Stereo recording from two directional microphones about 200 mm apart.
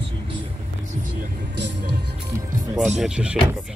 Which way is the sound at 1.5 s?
60° right (ahead or behind).